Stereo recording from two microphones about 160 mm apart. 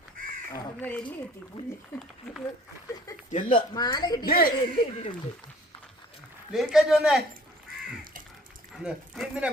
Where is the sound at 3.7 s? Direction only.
25° left (ahead or behind).